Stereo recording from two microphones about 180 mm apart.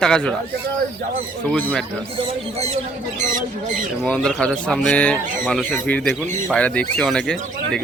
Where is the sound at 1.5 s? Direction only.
5° left (ahead or behind).